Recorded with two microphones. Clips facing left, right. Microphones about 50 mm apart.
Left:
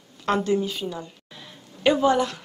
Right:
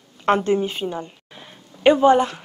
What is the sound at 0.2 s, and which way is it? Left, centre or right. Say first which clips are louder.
A woman's voice: right 4 dB; right.